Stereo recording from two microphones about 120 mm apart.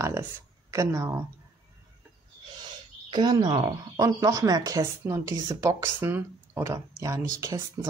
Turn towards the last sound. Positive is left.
turn(degrees=-25)  # may be behind; listen again after turning